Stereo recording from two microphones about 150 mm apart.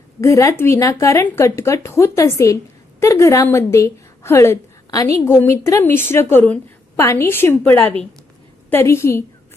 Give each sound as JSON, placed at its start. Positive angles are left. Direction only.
{"t": 0.2, "sound": "a woman's voice", "side_deg": 20}